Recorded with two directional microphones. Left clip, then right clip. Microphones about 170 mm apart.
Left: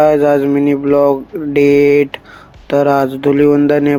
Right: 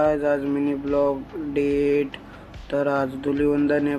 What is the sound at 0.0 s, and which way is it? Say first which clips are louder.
Speech: left 11 dB; 50° left (ahead or behind).